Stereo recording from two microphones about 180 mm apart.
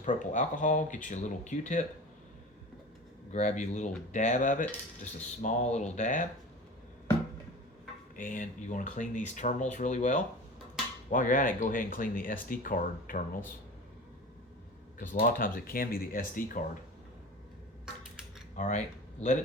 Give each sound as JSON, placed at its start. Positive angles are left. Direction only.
{"t": 0.0, "sound": "speech", "side_deg": 45}
{"t": 3.3, "sound": "speech", "side_deg": 40}
{"t": 8.1, "sound": "speech", "side_deg": 50}
{"t": 15.0, "sound": "speech", "side_deg": 50}
{"t": 18.5, "sound": "speech", "side_deg": 45}